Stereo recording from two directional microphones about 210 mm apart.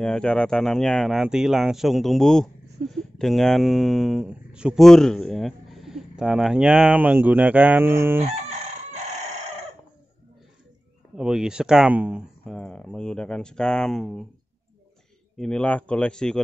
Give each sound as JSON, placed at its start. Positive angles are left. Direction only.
{"t": 0.0, "sound": "speech", "side_deg": 5}
{"t": 8.2, "sound": "crowing", "side_deg": -35}
{"t": 11.1, "sound": "speech", "side_deg": -5}
{"t": 15.3, "sound": "speech", "side_deg": 5}